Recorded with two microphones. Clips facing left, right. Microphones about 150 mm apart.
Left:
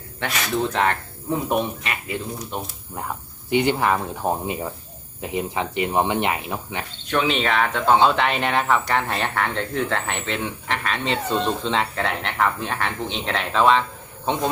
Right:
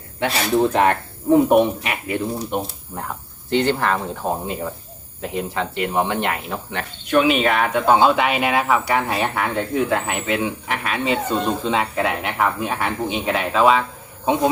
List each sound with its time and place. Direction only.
0.3 s speech: 30° right (ahead or behind)
0.7 s speech: 15° right (ahead or behind)
1.3 s speech: 60° right (ahead or behind)
3.5 s speech: 15° left (ahead or behind)
7.1 s speech: 10° right (ahead or behind)